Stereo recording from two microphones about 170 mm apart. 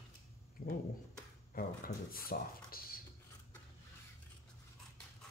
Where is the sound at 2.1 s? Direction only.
60° left (ahead or behind).